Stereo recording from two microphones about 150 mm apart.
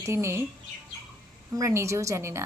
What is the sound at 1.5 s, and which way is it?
Speech, 20° right (ahead or behind).